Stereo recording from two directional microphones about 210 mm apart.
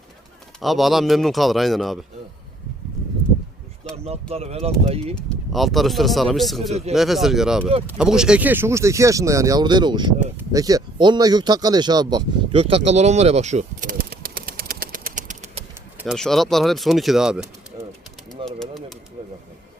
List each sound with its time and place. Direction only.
0.6 s speech: centre (ahead or behind)
3.9 s speech: 30° right (ahead or behind)
5.1 s speech: centre (ahead or behind); by 12.8 s 25° right (ahead or behind)
12.9 s bird: 30° right (ahead or behind)
16.0 s speech: centre (ahead or behind)
18.4 s pigeon: centre (ahead or behind)